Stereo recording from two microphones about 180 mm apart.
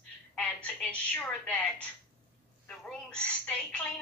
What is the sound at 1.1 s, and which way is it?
Speech, 5° left (ahead or behind).